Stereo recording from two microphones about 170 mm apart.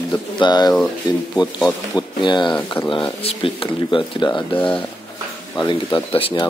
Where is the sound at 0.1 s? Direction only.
25° left (ahead or behind).